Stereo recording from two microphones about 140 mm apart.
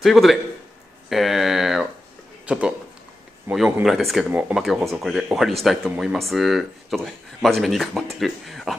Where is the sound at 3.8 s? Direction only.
Centre (ahead or behind).